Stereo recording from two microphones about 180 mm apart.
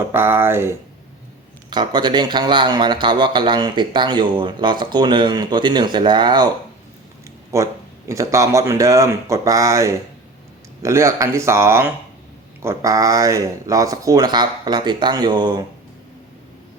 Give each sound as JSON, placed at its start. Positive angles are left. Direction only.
{"t": 0.1, "sound": "speech", "side_deg": -10}
{"t": 1.7, "sound": "a man's voice", "side_deg": -25}
{"t": 7.5, "sound": "a man's voice", "side_deg": -15}